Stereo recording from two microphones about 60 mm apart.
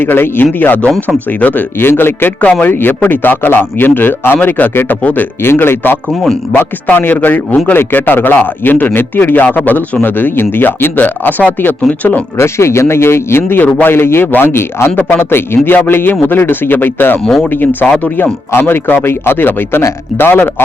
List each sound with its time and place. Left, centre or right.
0.0 s a man's voice: left
2.4 s a man's voice: left
12.4 s a man's voice: left
17.2 s speech: centre
18.0 s a man's voice: left